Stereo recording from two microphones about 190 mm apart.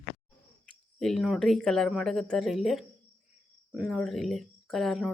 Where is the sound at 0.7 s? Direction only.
Centre (ahead or behind).